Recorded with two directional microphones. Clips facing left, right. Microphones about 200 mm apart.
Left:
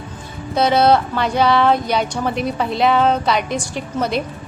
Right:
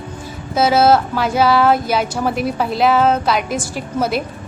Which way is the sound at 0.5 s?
5° right (ahead or behind).